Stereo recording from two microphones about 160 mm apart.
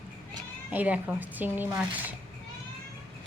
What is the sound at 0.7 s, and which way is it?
A woman's voice, 10° right (ahead or behind).